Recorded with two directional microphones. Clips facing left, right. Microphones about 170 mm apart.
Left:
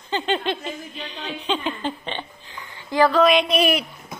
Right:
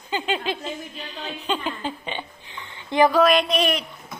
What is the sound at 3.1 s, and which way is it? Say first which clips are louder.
Speech: left 1 dB; centre (ahead or behind).